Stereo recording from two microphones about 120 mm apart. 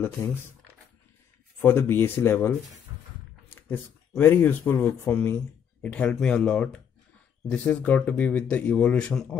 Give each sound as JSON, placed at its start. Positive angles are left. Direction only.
{"t": 1.6, "sound": "speech", "side_deg": 15}
{"t": 3.4, "sound": "a sound", "side_deg": 15}
{"t": 4.2, "sound": "speech", "side_deg": 15}